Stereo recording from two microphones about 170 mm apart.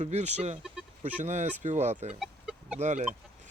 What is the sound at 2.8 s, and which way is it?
Speech, 40° right (ahead or behind).